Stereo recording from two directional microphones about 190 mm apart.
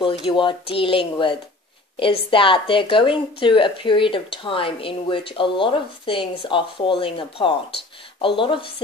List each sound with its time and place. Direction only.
0.0 s speech: 25° left (ahead or behind)